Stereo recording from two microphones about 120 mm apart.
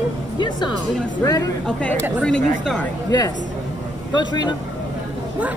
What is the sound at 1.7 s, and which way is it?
A woman's voice, 10° left (ahead or behind).